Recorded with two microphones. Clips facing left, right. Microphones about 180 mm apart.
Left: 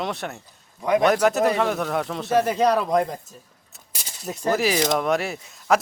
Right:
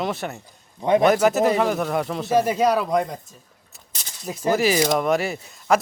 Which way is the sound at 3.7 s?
10° left (ahead or behind).